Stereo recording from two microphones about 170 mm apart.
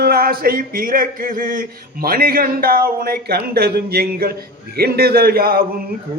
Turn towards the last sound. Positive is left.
turn(degrees=-60)  # may be behind; listen again after turning